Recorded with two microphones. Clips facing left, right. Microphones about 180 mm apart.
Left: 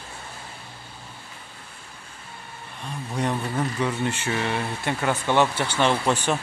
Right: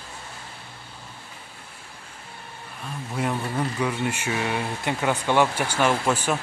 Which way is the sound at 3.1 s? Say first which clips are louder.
Left 1 dB; 5° right (ahead or behind).